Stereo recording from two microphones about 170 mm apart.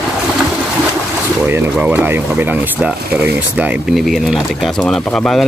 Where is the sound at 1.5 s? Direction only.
10° right (ahead or behind).